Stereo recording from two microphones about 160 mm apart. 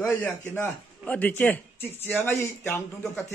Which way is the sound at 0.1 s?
15° left (ahead or behind).